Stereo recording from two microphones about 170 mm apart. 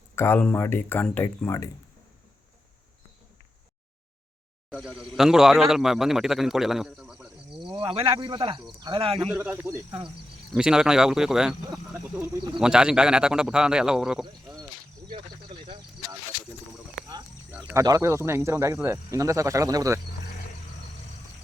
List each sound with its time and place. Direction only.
0.2 s speech: 10° left (ahead or behind)
4.7 s a man's voice: 5° right (ahead or behind)
7.6 s speech: 30° right (ahead or behind)
9.3 s a man's voice: 10° right (ahead or behind)
17.5 s a sound: 10° right (ahead or behind)
17.7 s speech: 20° right (ahead or behind)